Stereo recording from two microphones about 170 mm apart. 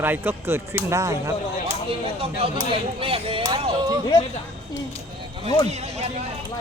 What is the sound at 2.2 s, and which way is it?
Speech, 35° right (ahead or behind).